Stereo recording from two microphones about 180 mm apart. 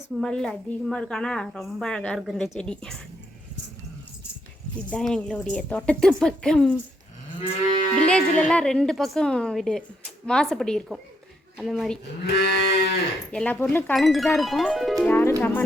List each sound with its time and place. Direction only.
0.2 s a woman's voice: 5° left (ahead or behind)
4.9 s a woman's voice: 5° left (ahead or behind)
8.1 s a woman's voice: 5° left (ahead or behind)
12.2 s cattle: 70° left (ahead or behind)
13.3 s a woman's voice: 5° left (ahead or behind)